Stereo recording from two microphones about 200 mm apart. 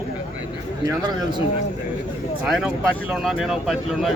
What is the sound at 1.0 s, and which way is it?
Speech, 20° right (ahead or behind).